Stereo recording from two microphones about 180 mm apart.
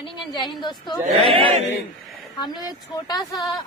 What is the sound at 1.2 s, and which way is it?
Speech, 30° right (ahead or behind).